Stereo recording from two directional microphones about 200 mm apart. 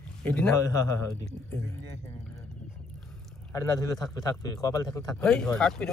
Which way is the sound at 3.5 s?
15° left (ahead or behind).